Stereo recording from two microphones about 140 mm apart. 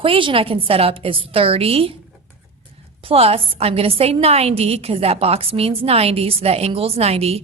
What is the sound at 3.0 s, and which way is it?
A woman's voice, 45° right (ahead or behind).